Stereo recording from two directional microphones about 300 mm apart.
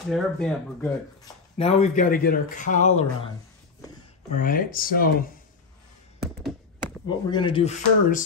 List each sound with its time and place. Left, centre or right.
0.1 s speech: centre
1.6 s speech: left
4.4 s speech: left
6.1 s tap: centre
7.1 s speech: centre